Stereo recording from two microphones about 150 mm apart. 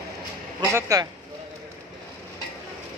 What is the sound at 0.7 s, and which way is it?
Speech, 20° right (ahead or behind).